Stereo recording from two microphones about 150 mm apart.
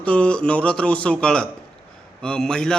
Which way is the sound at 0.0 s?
10° left (ahead or behind).